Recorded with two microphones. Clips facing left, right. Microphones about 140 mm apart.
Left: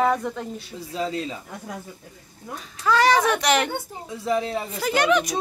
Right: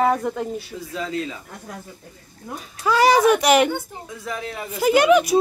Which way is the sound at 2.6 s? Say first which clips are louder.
Right 2 dB; 10° right (ahead or behind).